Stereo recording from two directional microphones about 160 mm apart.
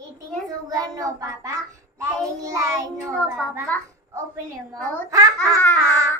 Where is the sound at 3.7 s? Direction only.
10° left (ahead or behind).